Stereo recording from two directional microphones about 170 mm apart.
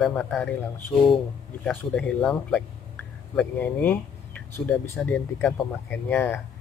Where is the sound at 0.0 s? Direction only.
5° left (ahead or behind).